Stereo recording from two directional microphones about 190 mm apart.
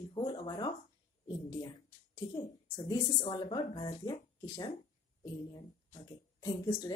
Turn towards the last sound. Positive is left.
turn(degrees=20)  # may be behind; listen again after turning